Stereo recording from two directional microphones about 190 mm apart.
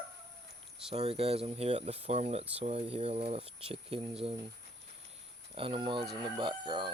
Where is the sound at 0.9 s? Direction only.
30° right (ahead or behind).